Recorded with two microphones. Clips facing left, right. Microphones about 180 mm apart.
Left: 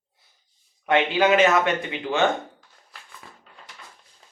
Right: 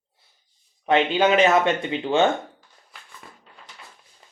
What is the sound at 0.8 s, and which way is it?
Speech, 25° right (ahead or behind).